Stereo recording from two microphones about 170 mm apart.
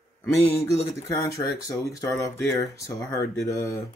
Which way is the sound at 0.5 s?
15° left (ahead or behind).